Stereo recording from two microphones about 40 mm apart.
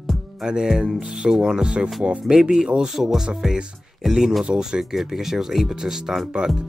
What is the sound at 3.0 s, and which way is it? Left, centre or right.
Speech, right.